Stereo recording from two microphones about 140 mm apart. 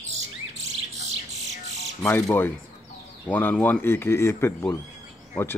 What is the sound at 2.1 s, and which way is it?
Speech, 15° left (ahead or behind).